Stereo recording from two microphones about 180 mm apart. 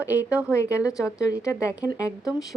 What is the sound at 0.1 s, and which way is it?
Speech, 5° right (ahead or behind).